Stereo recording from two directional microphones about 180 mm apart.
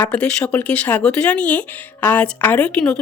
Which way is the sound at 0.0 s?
5° left (ahead or behind).